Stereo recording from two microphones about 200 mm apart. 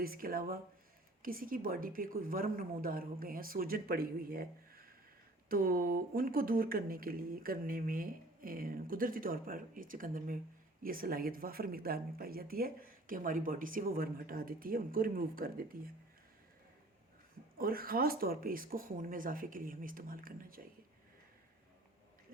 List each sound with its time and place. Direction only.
0.0 s speech: 45° right (ahead or behind)
17.6 s speech: 45° right (ahead or behind)